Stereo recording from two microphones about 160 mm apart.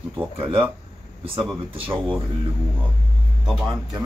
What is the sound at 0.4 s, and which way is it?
Speech, 30° right (ahead or behind).